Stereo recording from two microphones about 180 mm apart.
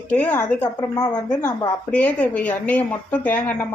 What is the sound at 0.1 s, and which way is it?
Speech, 5° left (ahead or behind).